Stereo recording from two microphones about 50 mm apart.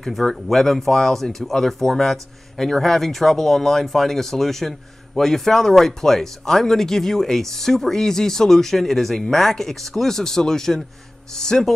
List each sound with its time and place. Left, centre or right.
0.0 s speech: centre